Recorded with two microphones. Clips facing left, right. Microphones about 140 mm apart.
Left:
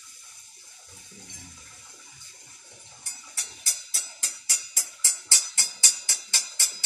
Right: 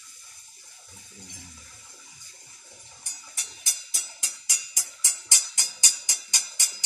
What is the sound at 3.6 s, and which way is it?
Music, 15° right (ahead or behind).